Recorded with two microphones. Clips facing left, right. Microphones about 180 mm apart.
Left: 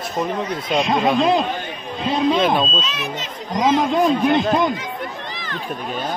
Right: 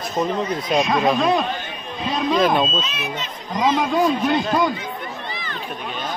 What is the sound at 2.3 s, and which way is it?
Speech, centre (ahead or behind).